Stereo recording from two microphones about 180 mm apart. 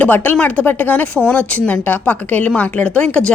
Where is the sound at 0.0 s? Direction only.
10° left (ahead or behind).